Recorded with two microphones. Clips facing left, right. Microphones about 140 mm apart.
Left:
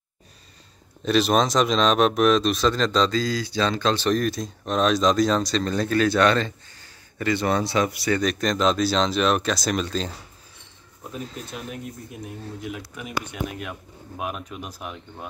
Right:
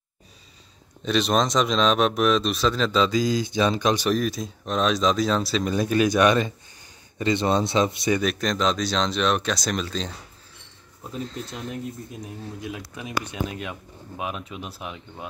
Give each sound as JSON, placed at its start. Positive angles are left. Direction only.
{"t": 1.0, "sound": "speech", "side_deg": 0}
{"t": 4.1, "sound": "speech", "side_deg": 0}
{"t": 8.2, "sound": "speech", "side_deg": 0}
{"t": 11.2, "sound": "speech", "side_deg": 5}
{"t": 12.6, "sound": "speech", "side_deg": -20}
{"t": 13.6, "sound": "speech", "side_deg": 0}